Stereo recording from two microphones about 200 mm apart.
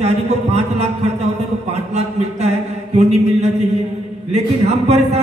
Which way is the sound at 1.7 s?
35° right (ahead or behind).